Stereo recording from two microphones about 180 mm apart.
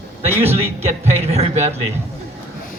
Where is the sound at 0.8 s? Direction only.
35° right (ahead or behind).